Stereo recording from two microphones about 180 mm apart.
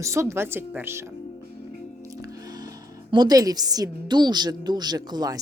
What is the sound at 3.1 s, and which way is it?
A woman's voice, 20° right (ahead or behind).